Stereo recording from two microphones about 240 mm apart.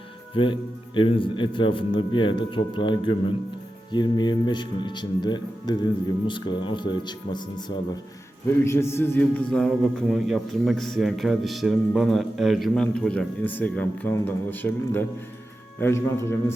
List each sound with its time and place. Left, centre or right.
0.9 s a man's voice: left
8.6 s a man's voice: centre